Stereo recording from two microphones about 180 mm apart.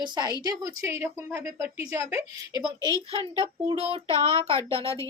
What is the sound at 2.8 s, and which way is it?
Speech, 20° left (ahead or behind).